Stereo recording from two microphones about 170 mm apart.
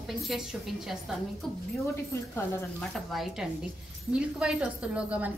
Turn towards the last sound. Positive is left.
turn(degrees=-5)  # may be behind; listen again after turning